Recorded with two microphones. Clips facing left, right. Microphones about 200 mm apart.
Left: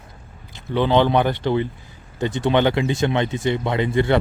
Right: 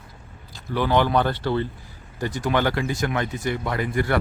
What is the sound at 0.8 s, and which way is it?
A man's voice, 20° left (ahead or behind).